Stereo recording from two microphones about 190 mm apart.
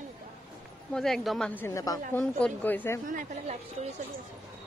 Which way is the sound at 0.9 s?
Centre (ahead or behind).